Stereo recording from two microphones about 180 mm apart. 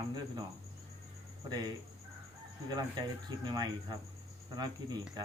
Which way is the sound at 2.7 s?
20° right (ahead or behind).